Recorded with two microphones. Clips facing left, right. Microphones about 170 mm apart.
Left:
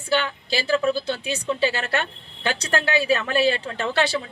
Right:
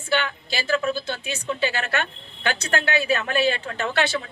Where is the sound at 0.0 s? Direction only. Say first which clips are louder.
Left 1 dB; 35° left (ahead or behind).